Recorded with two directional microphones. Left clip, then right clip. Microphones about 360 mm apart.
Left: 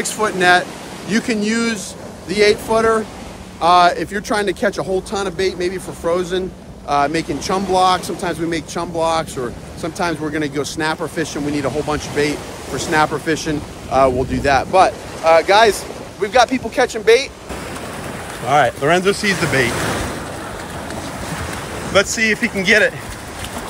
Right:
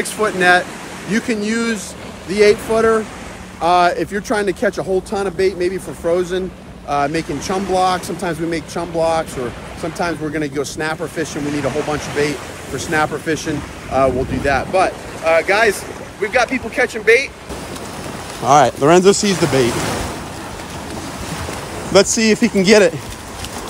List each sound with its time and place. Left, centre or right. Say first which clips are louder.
0.0 s speech: right 1 dB; centre
3.6 s speech: left 2 dB; centre
18.5 s speech: right 3 dB; centre
21.8 s speech: right 2 dB; centre